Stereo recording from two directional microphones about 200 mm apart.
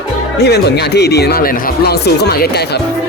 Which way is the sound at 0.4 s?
55° left (ahead or behind).